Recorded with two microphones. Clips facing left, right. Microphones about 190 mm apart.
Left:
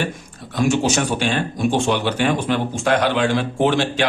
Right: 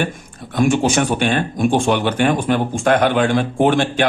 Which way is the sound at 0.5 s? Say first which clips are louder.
Right 3 dB; 55° right (ahead or behind).